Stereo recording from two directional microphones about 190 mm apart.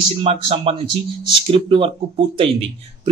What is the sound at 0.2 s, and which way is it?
Speech, 30° right (ahead or behind).